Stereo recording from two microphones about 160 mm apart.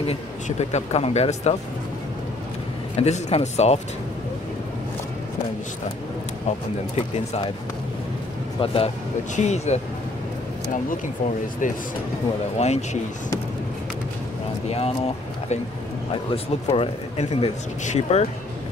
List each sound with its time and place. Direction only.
0.0 s a man's voice: 40° left (ahead or behind)
3.0 s speech: 40° left (ahead or behind)
7.0 s a man's voice: 35° left (ahead or behind)
8.5 s a man's voice: 35° left (ahead or behind)
9.3 s speech: 45° left (ahead or behind)
12.5 s speech: 45° left (ahead or behind)
16.1 s a man's voice: 35° left (ahead or behind)